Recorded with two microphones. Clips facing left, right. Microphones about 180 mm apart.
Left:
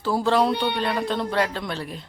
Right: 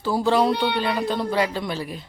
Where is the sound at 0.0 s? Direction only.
Centre (ahead or behind).